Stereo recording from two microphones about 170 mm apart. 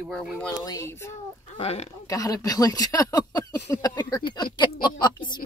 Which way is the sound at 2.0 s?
20° left (ahead or behind).